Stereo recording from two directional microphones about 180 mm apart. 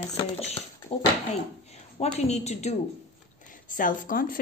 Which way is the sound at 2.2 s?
35° left (ahead or behind).